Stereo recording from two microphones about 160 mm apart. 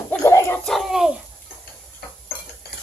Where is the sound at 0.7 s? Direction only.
Centre (ahead or behind).